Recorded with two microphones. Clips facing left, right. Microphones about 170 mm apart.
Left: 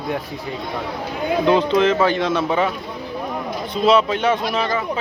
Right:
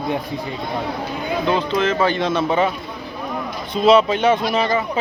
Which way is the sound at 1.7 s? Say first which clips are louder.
Left 2 dB; 10° left (ahead or behind).